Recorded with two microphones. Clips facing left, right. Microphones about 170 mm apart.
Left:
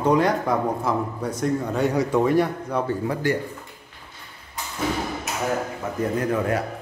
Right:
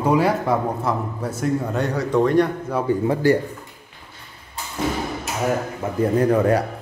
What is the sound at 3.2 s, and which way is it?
Speech, 35° right (ahead or behind).